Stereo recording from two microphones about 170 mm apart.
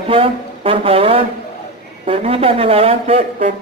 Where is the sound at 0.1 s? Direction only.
35° right (ahead or behind).